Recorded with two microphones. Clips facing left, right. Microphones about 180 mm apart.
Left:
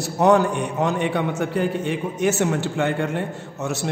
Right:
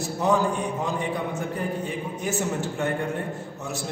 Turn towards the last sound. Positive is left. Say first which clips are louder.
# left 6 dB
turn(degrees=80)